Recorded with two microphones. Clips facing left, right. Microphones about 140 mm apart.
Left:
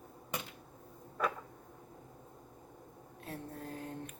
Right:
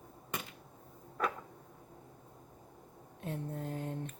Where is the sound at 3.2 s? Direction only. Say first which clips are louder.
Right 5 dB; 20° right (ahead or behind).